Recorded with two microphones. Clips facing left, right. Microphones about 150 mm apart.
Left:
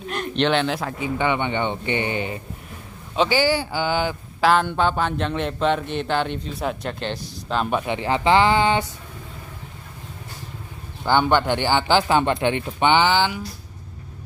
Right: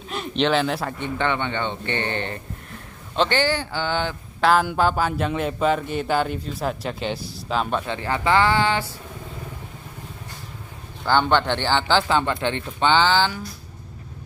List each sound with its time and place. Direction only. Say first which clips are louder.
0.1 s speech: even; centre (ahead or behind)
4.5 s speech: even; 5° right (ahead or behind)
7.8 s speech: left 3 dB; 15° left (ahead or behind)
11.1 s speech: left 1 dB; 10° left (ahead or behind)